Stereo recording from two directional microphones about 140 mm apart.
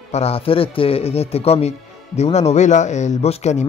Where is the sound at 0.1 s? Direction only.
45° left (ahead or behind).